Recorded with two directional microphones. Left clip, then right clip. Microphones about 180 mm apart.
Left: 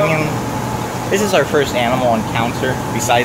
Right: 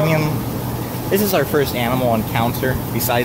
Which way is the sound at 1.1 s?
25° right (ahead or behind).